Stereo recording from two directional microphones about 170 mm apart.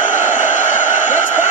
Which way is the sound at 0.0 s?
50° left (ahead or behind).